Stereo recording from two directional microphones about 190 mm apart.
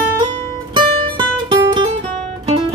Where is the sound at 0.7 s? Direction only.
25° right (ahead or behind).